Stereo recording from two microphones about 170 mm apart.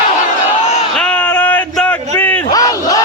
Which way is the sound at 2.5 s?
20° left (ahead or behind).